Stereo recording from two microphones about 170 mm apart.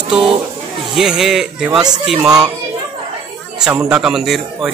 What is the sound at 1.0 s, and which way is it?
Speech, centre (ahead or behind).